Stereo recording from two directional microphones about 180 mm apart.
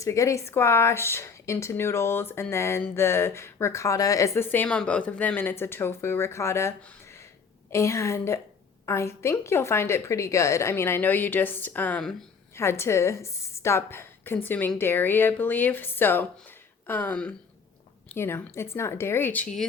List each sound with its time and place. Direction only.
0.0 s a woman's voice: 15° left (ahead or behind)